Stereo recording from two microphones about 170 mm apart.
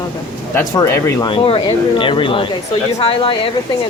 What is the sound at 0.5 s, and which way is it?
Speech, 20° left (ahead or behind).